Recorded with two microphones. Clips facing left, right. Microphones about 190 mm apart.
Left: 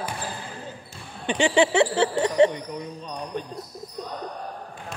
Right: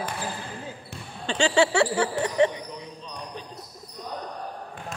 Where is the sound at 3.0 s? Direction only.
55° left (ahead or behind).